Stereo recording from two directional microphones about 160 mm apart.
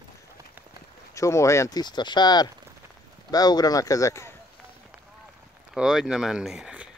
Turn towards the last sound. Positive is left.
turn(degrees=-5)  # may be behind; listen again after turning